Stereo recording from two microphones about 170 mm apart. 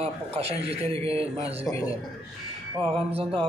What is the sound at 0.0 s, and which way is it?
A man's voice, 35° right (ahead or behind).